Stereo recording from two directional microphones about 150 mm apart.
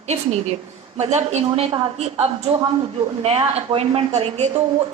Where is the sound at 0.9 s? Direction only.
50° right (ahead or behind).